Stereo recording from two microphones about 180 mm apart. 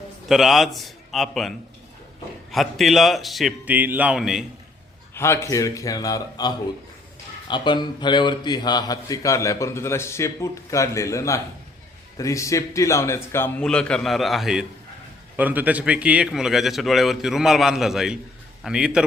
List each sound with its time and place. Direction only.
0.3 s a man's voice: centre (ahead or behind)
5.1 s a man's voice: 15° left (ahead or behind); by 19.0 s 5° right (ahead or behind)